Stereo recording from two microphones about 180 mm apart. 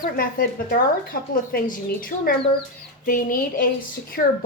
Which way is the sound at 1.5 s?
55° left (ahead or behind).